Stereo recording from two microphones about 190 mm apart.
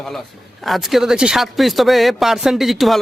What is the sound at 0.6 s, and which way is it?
A man's voice, centre (ahead or behind).